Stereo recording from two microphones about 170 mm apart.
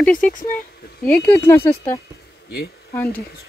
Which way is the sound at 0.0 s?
5° left (ahead or behind).